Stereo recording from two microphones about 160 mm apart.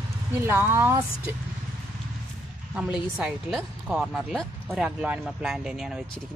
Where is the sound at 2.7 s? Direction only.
5° right (ahead or behind).